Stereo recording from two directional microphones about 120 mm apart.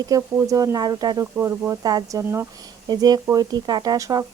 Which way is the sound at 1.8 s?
35° right (ahead or behind).